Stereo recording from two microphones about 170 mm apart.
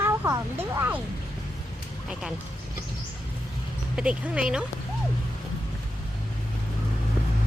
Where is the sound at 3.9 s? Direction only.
5° right (ahead or behind).